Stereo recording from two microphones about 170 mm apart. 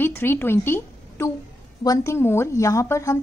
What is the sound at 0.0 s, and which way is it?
A woman's voice, 15° left (ahead or behind).